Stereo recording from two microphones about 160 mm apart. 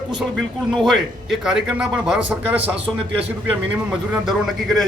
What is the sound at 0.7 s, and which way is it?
Speech, centre (ahead or behind).